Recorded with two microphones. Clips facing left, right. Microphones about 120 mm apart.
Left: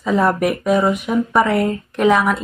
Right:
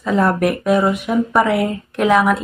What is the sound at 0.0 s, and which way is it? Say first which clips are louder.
Speech: even; centre (ahead or behind).